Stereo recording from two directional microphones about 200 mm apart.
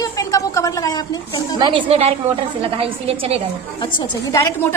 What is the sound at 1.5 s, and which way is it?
A woman's voice, 25° right (ahead or behind).